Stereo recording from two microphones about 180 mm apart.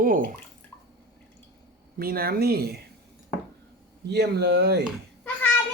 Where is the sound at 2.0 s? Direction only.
55° right (ahead or behind).